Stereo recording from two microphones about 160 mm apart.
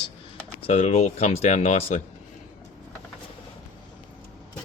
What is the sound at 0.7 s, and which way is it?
Speech, 45° left (ahead or behind).